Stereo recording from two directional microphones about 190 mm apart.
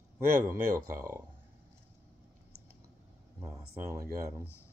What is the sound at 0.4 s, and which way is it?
Speech, 15° right (ahead or behind).